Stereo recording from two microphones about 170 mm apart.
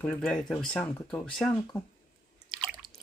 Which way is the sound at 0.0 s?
10° left (ahead or behind).